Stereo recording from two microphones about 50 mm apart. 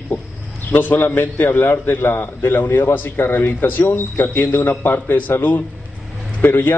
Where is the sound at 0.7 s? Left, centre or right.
Left.